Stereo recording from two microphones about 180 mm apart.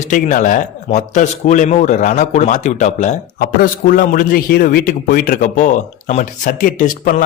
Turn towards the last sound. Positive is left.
turn(degrees=50)  # may be behind; listen again after turning